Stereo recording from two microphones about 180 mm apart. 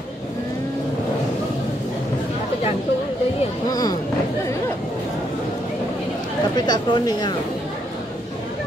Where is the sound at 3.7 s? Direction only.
20° left (ahead or behind).